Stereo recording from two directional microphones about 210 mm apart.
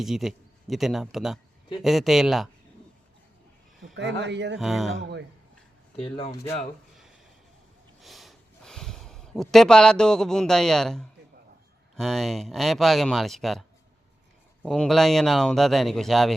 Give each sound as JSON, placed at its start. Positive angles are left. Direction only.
{"t": 0.0, "sound": "speech", "side_deg": 0}
{"t": 3.9, "sound": "speech", "side_deg": -55}
{"t": 4.5, "sound": "speech", "side_deg": 0}
{"t": 6.0, "sound": "speech", "side_deg": 25}
{"t": 8.0, "sound": "a sound", "side_deg": 0}
{"t": 11.9, "sound": "speech", "side_deg": 0}